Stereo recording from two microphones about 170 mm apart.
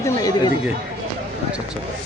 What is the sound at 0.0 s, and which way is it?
Speech, 20° left (ahead or behind).